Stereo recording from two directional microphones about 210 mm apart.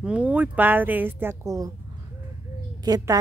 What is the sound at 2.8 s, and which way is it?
Speech, 20° right (ahead or behind).